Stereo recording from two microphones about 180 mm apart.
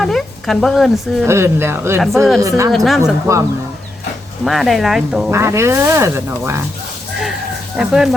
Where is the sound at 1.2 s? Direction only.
15° right (ahead or behind).